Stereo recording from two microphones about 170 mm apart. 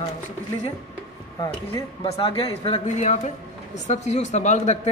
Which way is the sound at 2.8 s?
45° left (ahead or behind).